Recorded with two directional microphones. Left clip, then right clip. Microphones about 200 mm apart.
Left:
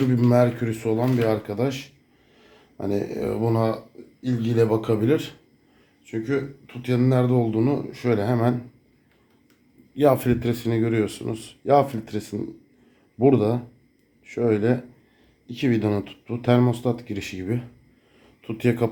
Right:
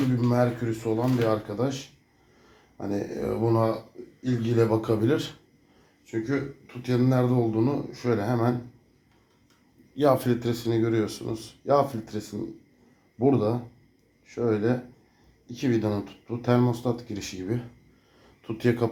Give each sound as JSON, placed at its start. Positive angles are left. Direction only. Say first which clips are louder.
{"t": 0.2, "sound": "speech", "louder": "left 8 dB", "side_deg": 55}
{"t": 9.9, "sound": "speech", "louder": "left 3 dB", "side_deg": 30}